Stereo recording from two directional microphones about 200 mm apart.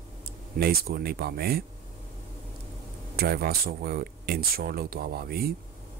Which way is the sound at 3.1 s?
50° right (ahead or behind).